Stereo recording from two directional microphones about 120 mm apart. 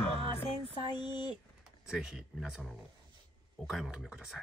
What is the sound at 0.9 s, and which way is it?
Speech, 40° left (ahead or behind).